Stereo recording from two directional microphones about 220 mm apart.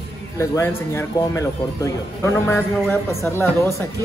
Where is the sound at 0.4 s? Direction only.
10° left (ahead or behind).